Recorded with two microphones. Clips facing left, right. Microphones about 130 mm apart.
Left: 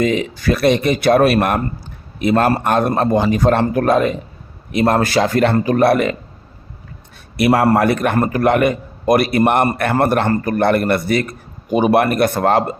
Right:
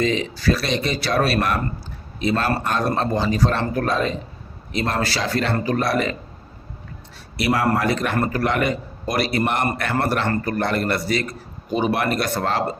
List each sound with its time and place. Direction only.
0.3 s a man's voice: 50° left (ahead or behind)
7.3 s a man's voice: 55° left (ahead or behind)